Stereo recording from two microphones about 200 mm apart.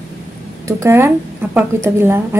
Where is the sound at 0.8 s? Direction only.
10° right (ahead or behind).